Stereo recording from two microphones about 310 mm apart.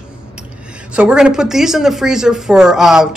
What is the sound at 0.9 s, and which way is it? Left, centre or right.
Speech, centre.